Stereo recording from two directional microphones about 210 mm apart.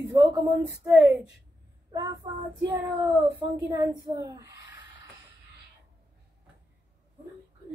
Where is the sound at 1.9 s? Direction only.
15° right (ahead or behind).